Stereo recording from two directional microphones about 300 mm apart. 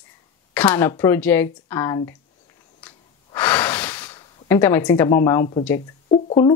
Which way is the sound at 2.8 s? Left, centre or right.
Centre.